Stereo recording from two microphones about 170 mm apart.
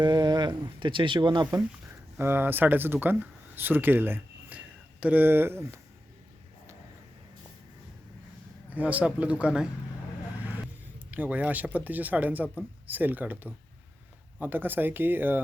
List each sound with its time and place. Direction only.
0.0 s speech: 25° right (ahead or behind)
2.1 s speech: 15° right (ahead or behind)
8.7 s speech: 10° right (ahead or behind)
11.1 s speech: 10° right (ahead or behind)